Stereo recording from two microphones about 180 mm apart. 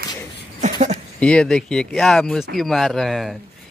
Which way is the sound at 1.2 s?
5° left (ahead or behind).